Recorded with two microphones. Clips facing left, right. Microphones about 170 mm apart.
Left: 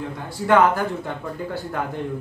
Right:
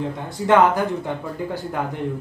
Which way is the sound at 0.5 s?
15° right (ahead or behind).